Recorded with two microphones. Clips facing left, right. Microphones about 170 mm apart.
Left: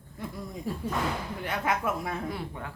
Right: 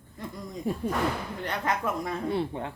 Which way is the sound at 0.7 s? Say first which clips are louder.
Right 5 dB; 20° right (ahead or behind).